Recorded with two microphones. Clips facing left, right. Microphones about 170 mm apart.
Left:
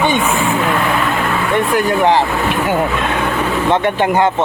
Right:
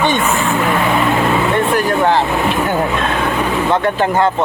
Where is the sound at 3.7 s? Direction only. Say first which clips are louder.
Left 2 dB; 15° left (ahead or behind).